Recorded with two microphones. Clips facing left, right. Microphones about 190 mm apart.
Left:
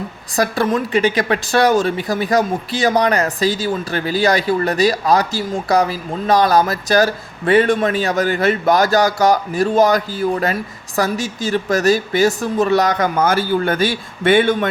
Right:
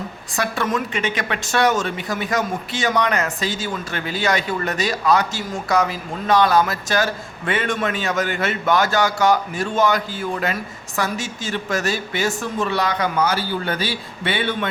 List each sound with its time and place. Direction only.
0.3 s a woman's voice: 35° left (ahead or behind)